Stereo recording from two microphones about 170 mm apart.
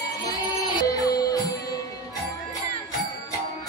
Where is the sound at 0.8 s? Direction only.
20° left (ahead or behind).